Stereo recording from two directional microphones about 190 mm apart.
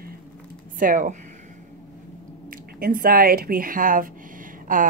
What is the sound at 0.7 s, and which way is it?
Speech, 45° right (ahead or behind).